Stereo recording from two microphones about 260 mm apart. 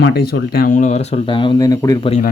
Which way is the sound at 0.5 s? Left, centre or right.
Left.